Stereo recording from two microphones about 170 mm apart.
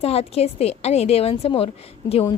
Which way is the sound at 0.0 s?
35° left (ahead or behind).